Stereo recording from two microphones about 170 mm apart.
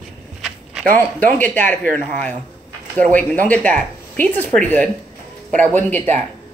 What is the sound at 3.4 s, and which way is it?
Speech, 10° left (ahead or behind).